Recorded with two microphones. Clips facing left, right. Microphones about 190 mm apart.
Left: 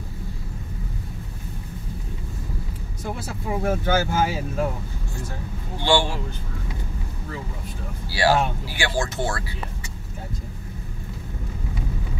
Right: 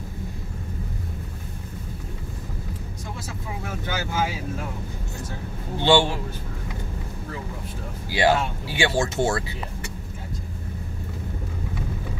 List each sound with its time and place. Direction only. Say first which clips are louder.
3.3 s speech: left 11 dB; 45° left (ahead or behind)
5.8 s speech: right 2 dB; 20° right (ahead or behind)
8.1 s speech: even; 20° right (ahead or behind)